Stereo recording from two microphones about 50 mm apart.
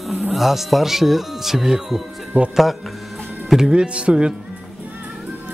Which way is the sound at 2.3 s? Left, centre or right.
Right.